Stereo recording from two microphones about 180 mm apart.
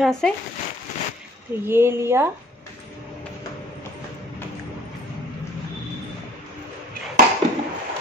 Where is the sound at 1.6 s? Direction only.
15° right (ahead or behind).